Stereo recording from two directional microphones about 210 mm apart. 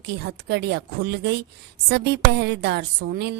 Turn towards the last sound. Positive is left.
turn(degrees=-55)  # may be behind; listen again after turning